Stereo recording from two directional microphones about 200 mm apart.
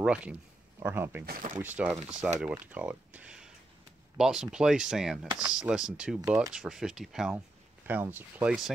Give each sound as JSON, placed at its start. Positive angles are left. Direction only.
{"t": 0.0, "sound": "speech", "side_deg": -5}
{"t": 1.2, "sound": "speech", "side_deg": -40}
{"t": 1.6, "sound": "speech", "side_deg": -10}